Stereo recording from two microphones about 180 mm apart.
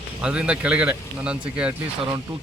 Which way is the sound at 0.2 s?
5° right (ahead or behind).